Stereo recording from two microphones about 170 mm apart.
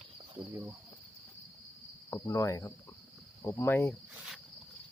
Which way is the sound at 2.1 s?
20° left (ahead or behind).